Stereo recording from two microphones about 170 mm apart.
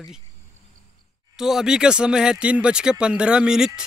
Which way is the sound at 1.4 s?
5° right (ahead or behind).